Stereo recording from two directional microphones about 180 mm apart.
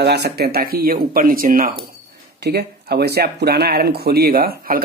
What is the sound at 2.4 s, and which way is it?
Speech, 65° right (ahead or behind).